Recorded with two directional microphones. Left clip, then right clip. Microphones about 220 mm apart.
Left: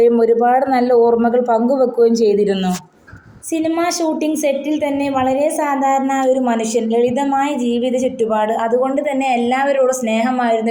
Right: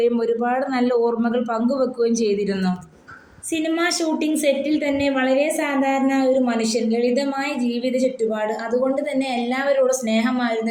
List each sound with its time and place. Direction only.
0.0 s speech: 15° left (ahead or behind)
5.2 s a woman's voice: 20° left (ahead or behind)
6.7 s speech: 65° left (ahead or behind)